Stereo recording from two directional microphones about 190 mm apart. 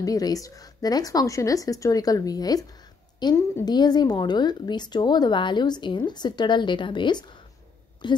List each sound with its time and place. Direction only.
0.0 s a woman's voice: 20° left (ahead or behind)